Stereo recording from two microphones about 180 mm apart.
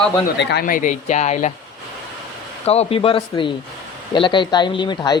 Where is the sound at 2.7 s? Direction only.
35° left (ahead or behind).